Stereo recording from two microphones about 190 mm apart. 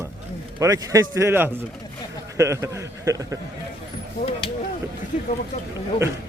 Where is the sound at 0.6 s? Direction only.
15° right (ahead or behind).